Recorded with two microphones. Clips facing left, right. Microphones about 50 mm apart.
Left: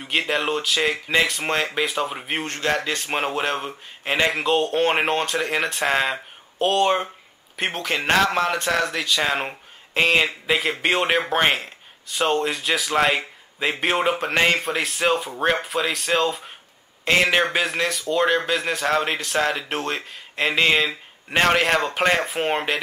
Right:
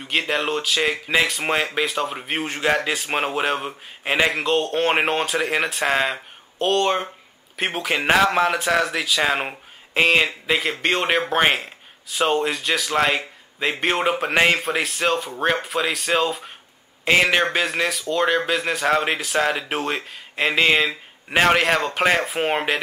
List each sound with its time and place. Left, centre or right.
0.0 s a man's voice: centre